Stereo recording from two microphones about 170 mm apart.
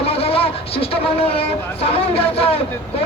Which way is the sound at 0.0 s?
35° left (ahead or behind).